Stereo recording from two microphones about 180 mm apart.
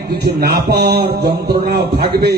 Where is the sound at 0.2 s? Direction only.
60° right (ahead or behind).